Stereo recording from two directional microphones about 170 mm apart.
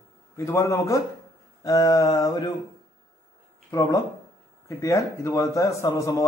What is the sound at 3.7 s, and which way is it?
A man's voice, 20° left (ahead or behind).